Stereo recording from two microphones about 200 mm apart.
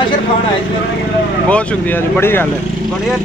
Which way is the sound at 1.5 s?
5° left (ahead or behind).